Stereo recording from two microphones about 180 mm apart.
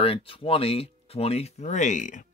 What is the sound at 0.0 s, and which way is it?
Speech, 30° left (ahead or behind).